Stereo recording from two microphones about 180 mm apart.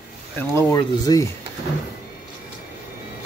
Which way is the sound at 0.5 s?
20° left (ahead or behind).